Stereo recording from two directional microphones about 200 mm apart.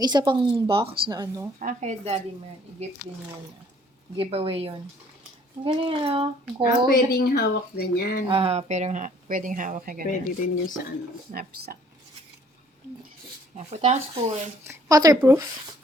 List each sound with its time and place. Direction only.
0.0 s speech: 20° right (ahead or behind)
1.5 s speech: 35° right (ahead or behind)
4.2 s speech: 30° right (ahead or behind)
6.9 s speech: 45° left (ahead or behind)
8.3 s speech: 30° right (ahead or behind)
10.1 s speech: 40° left (ahead or behind)
11.3 s speech: 45° right (ahead or behind)
13.7 s speech: 35° right (ahead or behind)
14.7 s speech: 15° right (ahead or behind)